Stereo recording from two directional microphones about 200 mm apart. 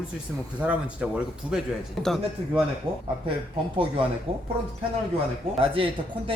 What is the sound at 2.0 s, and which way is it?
Speech, centre (ahead or behind).